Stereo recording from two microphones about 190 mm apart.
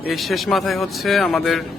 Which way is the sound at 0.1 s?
Centre (ahead or behind).